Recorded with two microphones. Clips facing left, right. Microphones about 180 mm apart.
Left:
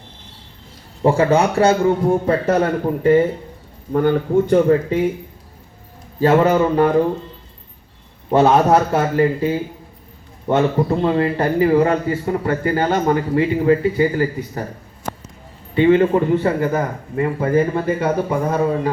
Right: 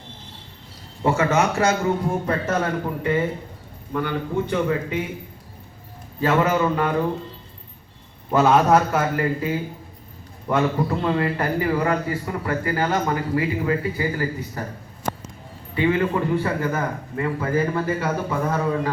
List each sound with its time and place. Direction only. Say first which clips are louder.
1.0 s a man's voice: left 5 dB; 30° left (ahead or behind)
6.1 s a man's voice: left 6 dB; 35° left (ahead or behind)
8.3 s a man's voice: left 3 dB; 30° left (ahead or behind)
15.7 s a man's voice: left 7 dB; 25° left (ahead or behind)